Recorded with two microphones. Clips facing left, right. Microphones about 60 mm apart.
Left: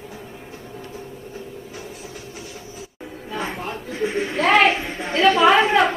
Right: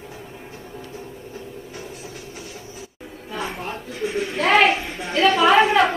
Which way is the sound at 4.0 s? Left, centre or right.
Left.